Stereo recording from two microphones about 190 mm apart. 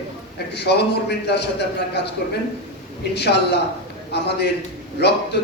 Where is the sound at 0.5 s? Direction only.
60° left (ahead or behind).